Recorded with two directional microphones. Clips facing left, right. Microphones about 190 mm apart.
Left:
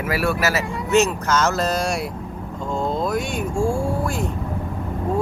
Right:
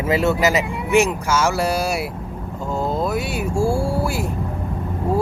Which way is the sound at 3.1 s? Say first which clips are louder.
Right 1 dB; 10° right (ahead or behind).